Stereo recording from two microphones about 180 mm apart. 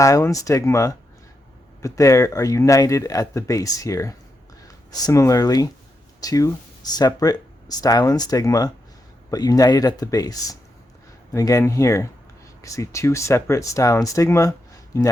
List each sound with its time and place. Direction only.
0.0 s speech: 15° left (ahead or behind)